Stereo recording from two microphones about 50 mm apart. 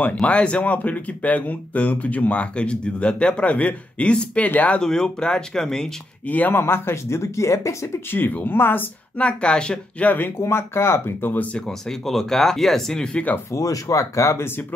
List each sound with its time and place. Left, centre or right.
0.2 s speech: left
4.7 s speech: centre
6.2 s speech: left
6.6 s speech: left
8.1 s speech: left
9.2 s speech: left
10.4 s speech: left
12.1 s speech: centre
13.1 s speech: left
13.5 s speech: left